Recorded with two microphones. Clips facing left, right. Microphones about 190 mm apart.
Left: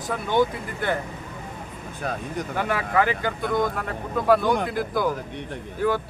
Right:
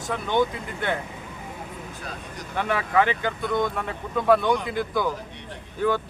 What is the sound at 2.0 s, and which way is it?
Speech, 55° left (ahead or behind).